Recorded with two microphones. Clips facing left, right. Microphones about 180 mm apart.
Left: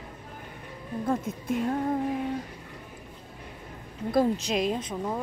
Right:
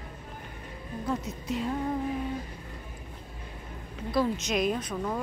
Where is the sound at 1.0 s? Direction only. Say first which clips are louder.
Left 3 dB; 50° left (ahead or behind).